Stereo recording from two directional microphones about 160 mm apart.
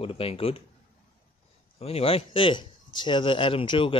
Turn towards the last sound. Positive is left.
turn(degrees=35)  # may be behind; listen again after turning